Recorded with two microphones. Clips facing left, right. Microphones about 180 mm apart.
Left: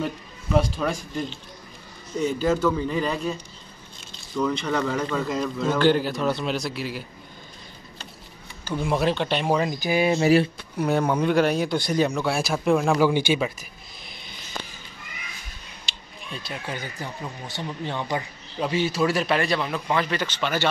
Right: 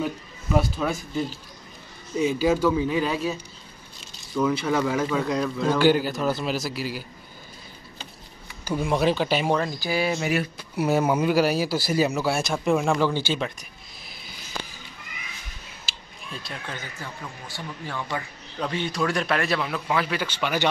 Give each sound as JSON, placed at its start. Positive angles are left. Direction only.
{"t": 0.0, "sound": "a man's voice", "side_deg": -5}
{"t": 4.4, "sound": "speech", "side_deg": -5}
{"t": 8.6, "sound": "speech", "side_deg": 0}
{"t": 9.6, "sound": "speech", "side_deg": 20}
{"t": 10.2, "sound": "speech", "side_deg": 30}
{"t": 10.8, "sound": "speech", "side_deg": -5}
{"t": 12.9, "sound": "speech", "side_deg": 15}
{"t": 15.8, "sound": "a sound", "side_deg": 0}
{"t": 16.6, "sound": "speech", "side_deg": 10}
{"t": 17.2, "sound": "speech", "side_deg": 20}
{"t": 18.6, "sound": "speech", "side_deg": 5}